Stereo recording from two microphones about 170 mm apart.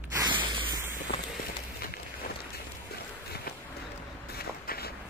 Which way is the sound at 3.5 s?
70° left (ahead or behind).